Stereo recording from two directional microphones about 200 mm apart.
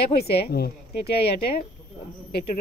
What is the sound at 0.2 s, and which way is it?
Speech, 50° left (ahead or behind).